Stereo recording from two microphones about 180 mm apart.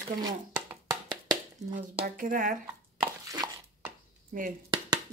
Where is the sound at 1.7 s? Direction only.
45° right (ahead or behind).